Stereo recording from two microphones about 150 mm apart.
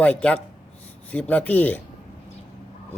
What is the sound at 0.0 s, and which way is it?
Speech, 10° left (ahead or behind).